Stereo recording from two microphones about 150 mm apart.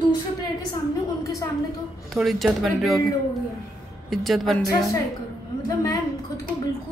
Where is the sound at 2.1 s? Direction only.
Centre (ahead or behind).